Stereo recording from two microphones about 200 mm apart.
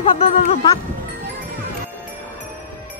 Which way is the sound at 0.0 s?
30° left (ahead or behind).